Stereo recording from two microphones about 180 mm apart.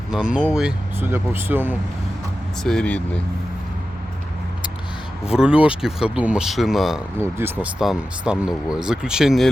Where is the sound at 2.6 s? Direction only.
5° left (ahead or behind).